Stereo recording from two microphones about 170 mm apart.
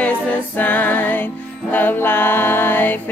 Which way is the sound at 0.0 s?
10° left (ahead or behind).